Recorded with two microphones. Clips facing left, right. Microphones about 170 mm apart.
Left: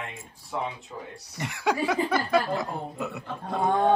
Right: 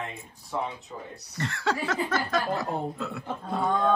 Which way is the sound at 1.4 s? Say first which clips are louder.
Left 2 dB; 15° left (ahead or behind).